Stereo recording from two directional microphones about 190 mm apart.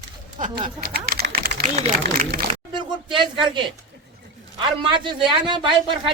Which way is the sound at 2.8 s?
25° right (ahead or behind).